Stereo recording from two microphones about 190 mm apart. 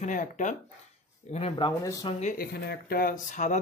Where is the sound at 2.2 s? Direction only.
55° left (ahead or behind).